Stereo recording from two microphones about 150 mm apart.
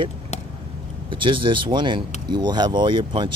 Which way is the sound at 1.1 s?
35° right (ahead or behind).